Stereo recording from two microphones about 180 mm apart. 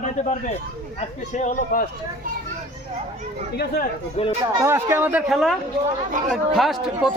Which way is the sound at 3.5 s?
60° left (ahead or behind).